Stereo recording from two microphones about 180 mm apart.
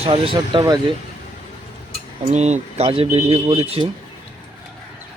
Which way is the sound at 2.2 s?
40° right (ahead or behind).